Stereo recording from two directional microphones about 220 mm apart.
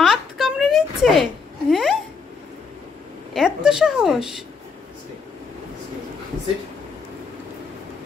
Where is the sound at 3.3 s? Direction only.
Centre (ahead or behind).